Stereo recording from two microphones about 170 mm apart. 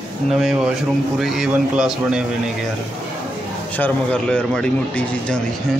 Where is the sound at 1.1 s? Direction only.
Centre (ahead or behind).